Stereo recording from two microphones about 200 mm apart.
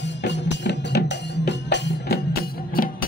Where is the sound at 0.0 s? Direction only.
60° left (ahead or behind).